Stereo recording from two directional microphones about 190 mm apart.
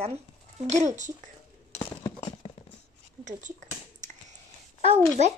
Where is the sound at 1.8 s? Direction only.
30° left (ahead or behind).